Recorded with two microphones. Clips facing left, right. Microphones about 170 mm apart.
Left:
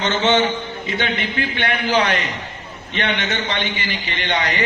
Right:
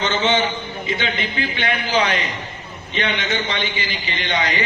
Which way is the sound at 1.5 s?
60° left (ahead or behind).